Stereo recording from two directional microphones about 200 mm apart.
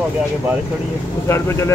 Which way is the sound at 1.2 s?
15° left (ahead or behind).